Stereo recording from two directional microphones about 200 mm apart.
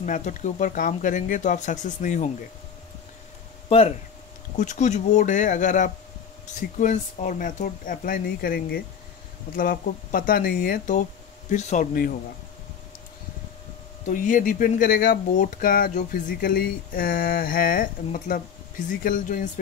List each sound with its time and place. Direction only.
0.0 s speech: 40° left (ahead or behind)
3.6 s speech: 30° left (ahead or behind); by 8.5 s 45° left (ahead or behind)
9.6 s speech: 45° left (ahead or behind)
14.0 s speech: 40° left (ahead or behind)